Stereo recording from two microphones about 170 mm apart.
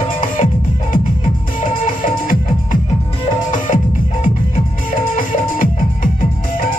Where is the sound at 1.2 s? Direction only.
50° left (ahead or behind).